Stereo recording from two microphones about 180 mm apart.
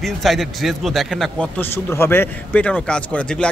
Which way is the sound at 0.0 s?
Centre (ahead or behind).